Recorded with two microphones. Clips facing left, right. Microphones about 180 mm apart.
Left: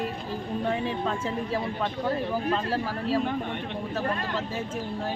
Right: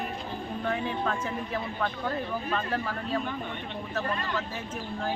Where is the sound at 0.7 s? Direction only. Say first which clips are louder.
Even; 25° left (ahead or behind).